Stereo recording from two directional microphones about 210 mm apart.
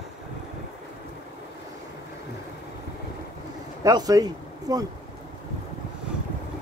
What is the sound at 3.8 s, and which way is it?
Speech, 15° right (ahead or behind).